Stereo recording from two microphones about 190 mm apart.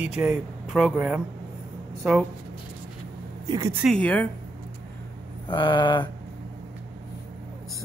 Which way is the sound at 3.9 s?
5° left (ahead or behind).